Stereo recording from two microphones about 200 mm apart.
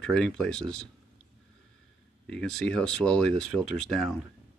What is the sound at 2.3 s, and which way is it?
Speech, 5° left (ahead or behind).